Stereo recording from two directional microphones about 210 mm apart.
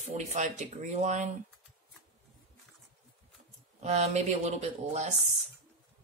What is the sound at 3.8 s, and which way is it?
Speech, 30° right (ahead or behind).